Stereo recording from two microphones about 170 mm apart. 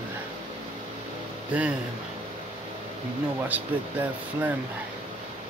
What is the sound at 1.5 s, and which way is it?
Speech, 5° right (ahead or behind).